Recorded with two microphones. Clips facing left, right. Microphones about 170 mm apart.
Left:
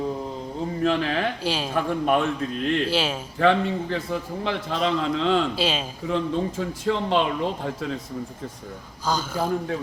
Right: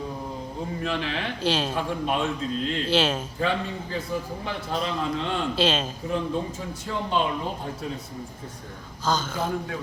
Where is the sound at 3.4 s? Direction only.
70° left (ahead or behind).